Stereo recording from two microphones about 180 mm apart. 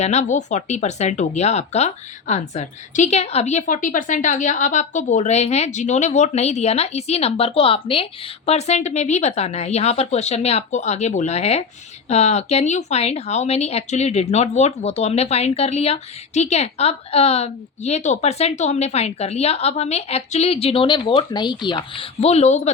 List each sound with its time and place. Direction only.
0.0 s speech: 40° left (ahead or behind)